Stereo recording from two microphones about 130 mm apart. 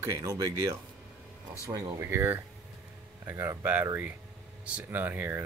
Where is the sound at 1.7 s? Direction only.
25° right (ahead or behind).